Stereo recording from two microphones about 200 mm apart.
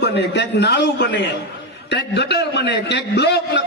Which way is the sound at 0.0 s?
60° left (ahead or behind).